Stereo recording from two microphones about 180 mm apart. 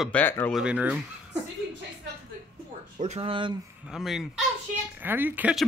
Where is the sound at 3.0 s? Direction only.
35° right (ahead or behind).